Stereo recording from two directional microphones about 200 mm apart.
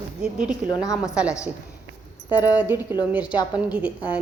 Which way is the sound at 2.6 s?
10° right (ahead or behind).